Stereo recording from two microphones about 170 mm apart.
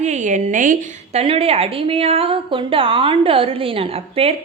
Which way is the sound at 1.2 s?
35° right (ahead or behind).